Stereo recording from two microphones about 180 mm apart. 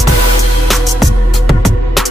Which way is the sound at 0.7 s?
Centre (ahead or behind).